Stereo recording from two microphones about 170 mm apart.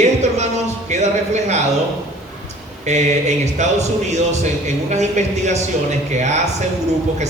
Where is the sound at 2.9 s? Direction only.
40° right (ahead or behind).